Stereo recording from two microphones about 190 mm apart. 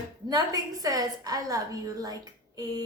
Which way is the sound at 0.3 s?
20° right (ahead or behind).